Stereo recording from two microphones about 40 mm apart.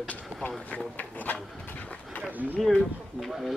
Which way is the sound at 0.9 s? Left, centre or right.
Left.